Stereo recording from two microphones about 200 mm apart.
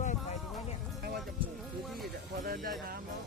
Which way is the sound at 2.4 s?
45° right (ahead or behind).